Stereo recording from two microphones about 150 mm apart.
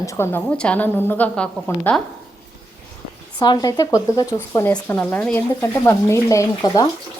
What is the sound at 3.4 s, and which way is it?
A woman's voice, 30° left (ahead or behind).